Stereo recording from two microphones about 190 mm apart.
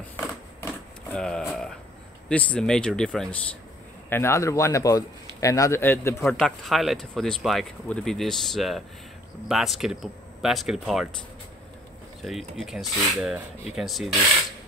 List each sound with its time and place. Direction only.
0.6 s a sound: 10° left (ahead or behind)
2.2 s speech: 5° left (ahead or behind)
4.1 s a man's voice: 15° left (ahead or behind); by 11.1 s centre (ahead or behind)
12.2 s speech: centre (ahead or behind)